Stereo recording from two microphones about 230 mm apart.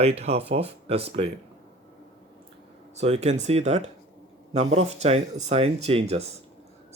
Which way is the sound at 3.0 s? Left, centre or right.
Right.